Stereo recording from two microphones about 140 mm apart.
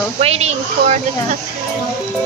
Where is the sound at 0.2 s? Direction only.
50° right (ahead or behind).